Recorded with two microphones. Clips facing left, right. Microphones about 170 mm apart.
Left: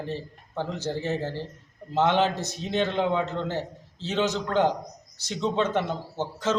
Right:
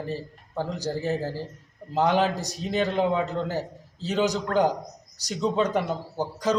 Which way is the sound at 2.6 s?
Centre (ahead or behind).